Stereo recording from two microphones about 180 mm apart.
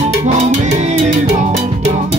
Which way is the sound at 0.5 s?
40° right (ahead or behind).